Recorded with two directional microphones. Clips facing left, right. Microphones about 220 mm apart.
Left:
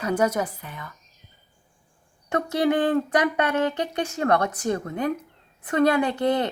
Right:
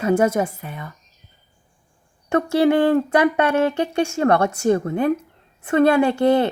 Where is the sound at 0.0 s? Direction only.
25° right (ahead or behind).